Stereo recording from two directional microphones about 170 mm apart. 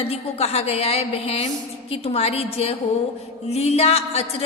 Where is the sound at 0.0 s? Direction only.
35° left (ahead or behind).